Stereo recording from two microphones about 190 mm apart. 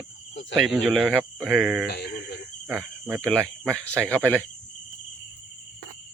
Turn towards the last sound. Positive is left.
turn(degrees=10)  # may be behind; listen again after turning